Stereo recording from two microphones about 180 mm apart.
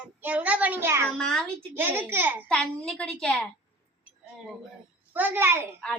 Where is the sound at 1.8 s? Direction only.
10° right (ahead or behind).